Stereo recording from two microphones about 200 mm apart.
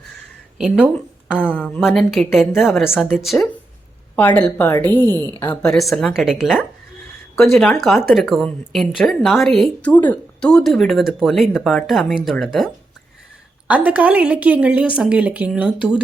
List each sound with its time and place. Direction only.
1.4 s a woman's voice: 10° left (ahead or behind)
5.0 s speech: 20° right (ahead or behind)
5.5 s a woman's voice: centre (ahead or behind)